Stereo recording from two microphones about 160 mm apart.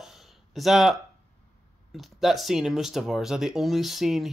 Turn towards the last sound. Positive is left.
turn(degrees=0)  # may be behind; listen again after turning